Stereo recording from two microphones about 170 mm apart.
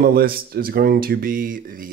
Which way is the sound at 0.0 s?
60° right (ahead or behind).